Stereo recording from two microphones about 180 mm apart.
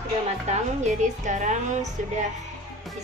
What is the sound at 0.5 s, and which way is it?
A woman's voice, 40° right (ahead or behind).